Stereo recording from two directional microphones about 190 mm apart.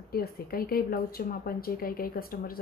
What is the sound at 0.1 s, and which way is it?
Speech, 50° left (ahead or behind).